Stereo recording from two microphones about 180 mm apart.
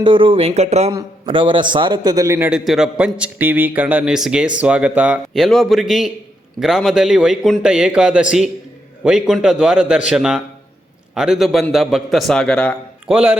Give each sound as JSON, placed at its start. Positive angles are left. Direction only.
{"t": 0.0, "sound": "speech", "side_deg": -30}
{"t": 0.9, "sound": "a man's voice", "side_deg": -25}
{"t": 2.5, "sound": "a man's voice", "side_deg": -5}
{"t": 13.1, "sound": "a man's voice", "side_deg": -5}